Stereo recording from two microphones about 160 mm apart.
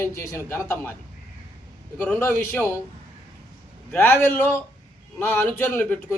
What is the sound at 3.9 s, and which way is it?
A man's voice, 10° left (ahead or behind).